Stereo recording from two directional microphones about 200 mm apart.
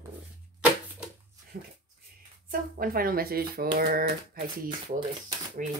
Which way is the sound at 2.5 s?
45° right (ahead or behind).